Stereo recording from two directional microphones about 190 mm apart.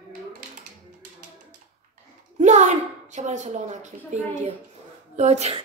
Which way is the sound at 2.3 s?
40° right (ahead or behind).